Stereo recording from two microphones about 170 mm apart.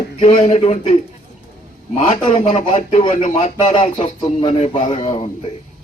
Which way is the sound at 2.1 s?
40° left (ahead or behind).